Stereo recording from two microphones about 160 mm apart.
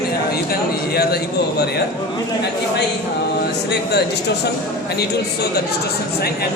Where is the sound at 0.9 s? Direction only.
85° left.